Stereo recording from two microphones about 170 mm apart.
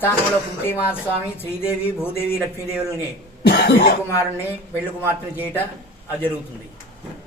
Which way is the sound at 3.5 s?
70° left (ahead or behind).